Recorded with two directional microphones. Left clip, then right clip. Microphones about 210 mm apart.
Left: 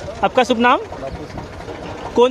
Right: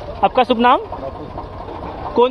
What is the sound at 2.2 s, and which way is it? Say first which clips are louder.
Speech: left 1 dB; 30° left (ahead or behind).